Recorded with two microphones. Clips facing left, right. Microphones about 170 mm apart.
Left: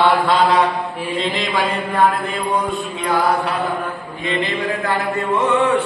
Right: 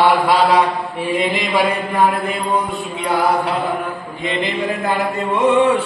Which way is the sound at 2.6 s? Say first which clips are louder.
Even; 20° right (ahead or behind).